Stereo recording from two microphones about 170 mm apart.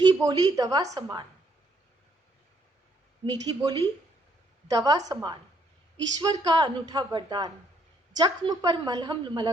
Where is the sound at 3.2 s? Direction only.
25° right (ahead or behind).